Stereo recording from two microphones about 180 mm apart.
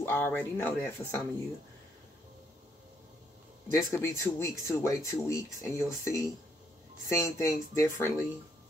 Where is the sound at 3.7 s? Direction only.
15° left (ahead or behind).